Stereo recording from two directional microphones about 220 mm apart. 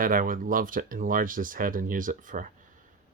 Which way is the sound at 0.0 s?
40° right (ahead or behind).